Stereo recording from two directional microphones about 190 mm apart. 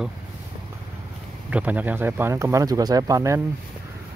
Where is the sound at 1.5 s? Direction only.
10° right (ahead or behind).